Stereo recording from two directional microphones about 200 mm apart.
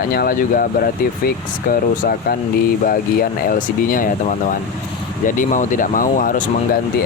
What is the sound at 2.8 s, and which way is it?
Speech, 45° left (ahead or behind).